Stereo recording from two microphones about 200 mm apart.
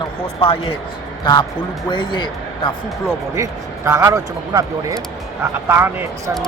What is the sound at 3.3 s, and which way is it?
Speech, 15° right (ahead or behind).